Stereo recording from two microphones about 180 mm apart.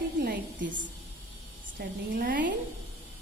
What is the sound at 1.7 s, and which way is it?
Speech, 50° right (ahead or behind).